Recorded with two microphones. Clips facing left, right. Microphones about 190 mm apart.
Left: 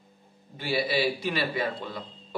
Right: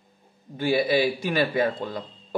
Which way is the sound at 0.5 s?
50° right (ahead or behind).